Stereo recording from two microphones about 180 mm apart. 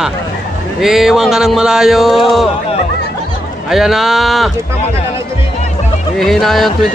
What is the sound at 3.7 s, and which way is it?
Speech, centre (ahead or behind).